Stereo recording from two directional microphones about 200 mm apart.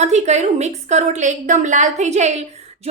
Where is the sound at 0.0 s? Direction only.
35° right (ahead or behind).